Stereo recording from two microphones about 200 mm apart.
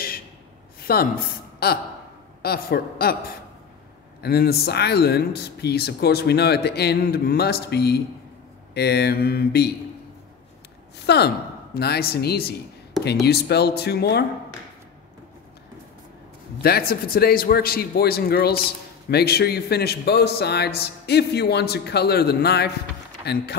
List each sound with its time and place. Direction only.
0.7 s a sound: 50° left (ahead or behind)
1.6 s speech: 50° left (ahead or behind)
4.2 s speech: 50° left (ahead or behind)
11.1 s a man's voice: 55° left (ahead or behind)
16.6 s a man's voice: 50° left (ahead or behind)